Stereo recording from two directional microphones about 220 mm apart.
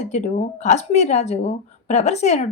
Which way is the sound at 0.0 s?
30° left (ahead or behind).